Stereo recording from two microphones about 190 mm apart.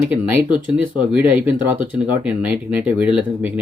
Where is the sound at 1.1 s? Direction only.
5° right (ahead or behind).